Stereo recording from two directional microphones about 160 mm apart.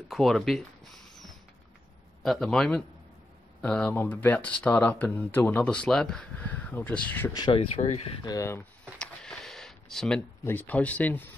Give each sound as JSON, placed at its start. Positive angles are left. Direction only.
{"t": 0.1, "sound": "speech", "side_deg": 0}
{"t": 2.2, "sound": "speech", "side_deg": 0}
{"t": 7.3, "sound": "speech", "side_deg": 30}
{"t": 8.2, "sound": "speech", "side_deg": 20}
{"t": 8.8, "sound": "a sound", "side_deg": 5}
{"t": 10.4, "sound": "speech", "side_deg": 10}